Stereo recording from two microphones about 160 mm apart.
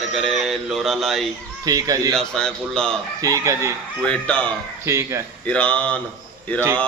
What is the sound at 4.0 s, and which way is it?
Speech, 10° left (ahead or behind).